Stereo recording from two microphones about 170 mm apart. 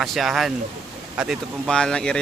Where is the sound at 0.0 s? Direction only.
Centre (ahead or behind).